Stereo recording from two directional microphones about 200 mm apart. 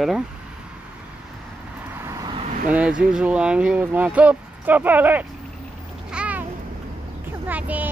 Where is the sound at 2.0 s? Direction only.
20° right (ahead or behind).